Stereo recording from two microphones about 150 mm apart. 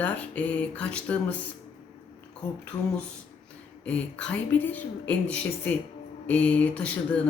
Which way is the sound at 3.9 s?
10° left (ahead or behind).